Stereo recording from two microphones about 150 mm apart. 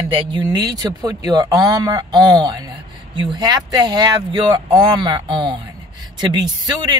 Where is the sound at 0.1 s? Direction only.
30° right (ahead or behind).